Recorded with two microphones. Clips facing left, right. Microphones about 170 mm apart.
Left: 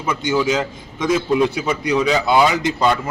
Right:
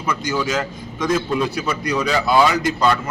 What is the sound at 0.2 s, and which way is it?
Speech, 20° left (ahead or behind).